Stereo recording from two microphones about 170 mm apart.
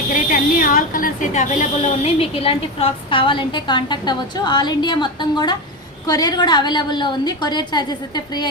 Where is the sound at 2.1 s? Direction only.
35° left (ahead or behind).